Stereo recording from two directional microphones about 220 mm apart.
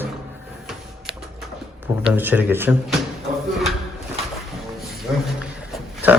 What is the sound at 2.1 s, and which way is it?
Speech, 10° right (ahead or behind).